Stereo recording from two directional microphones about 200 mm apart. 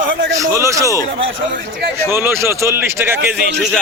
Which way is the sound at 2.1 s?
10° right (ahead or behind).